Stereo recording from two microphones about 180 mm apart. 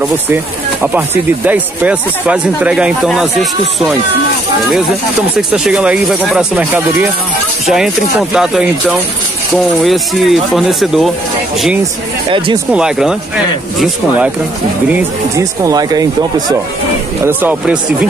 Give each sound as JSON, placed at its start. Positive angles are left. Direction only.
{"t": 0.9, "sound": "speech", "side_deg": -10}
{"t": 5.5, "sound": "speech", "side_deg": -5}
{"t": 12.3, "sound": "speech", "side_deg": -30}
{"t": 12.7, "sound": "speech", "side_deg": -5}
{"t": 14.9, "sound": "speech", "side_deg": -20}
{"t": 17.2, "sound": "speech", "side_deg": -10}